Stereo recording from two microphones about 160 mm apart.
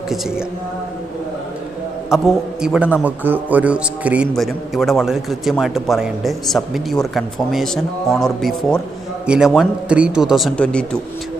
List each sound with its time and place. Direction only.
2.0 s a man's voice: centre (ahead or behind)